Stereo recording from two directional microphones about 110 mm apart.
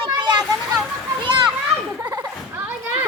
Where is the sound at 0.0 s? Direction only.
45° right (ahead or behind).